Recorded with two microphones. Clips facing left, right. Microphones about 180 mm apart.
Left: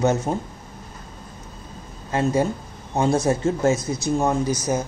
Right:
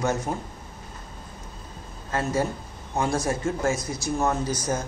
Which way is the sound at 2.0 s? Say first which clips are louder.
Left 5 dB; 20° left (ahead or behind).